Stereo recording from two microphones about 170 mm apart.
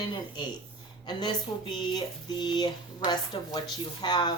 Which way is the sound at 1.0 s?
25° left (ahead or behind).